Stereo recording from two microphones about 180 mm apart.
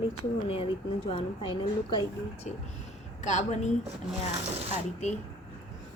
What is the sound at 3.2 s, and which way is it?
Speech, 40° left (ahead or behind).